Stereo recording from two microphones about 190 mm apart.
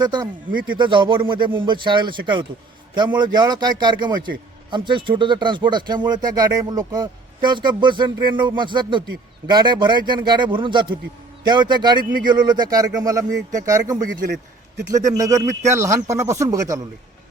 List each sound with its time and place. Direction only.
0.0 s speech: 20° right (ahead or behind)
13.2 s speech: 40° right (ahead or behind)
13.7 s speech: 15° right (ahead or behind)